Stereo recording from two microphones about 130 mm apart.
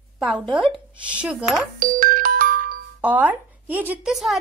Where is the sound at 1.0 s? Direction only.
10° right (ahead or behind).